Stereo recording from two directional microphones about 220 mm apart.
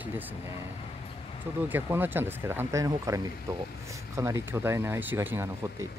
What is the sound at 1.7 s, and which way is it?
Speech, 10° right (ahead or behind).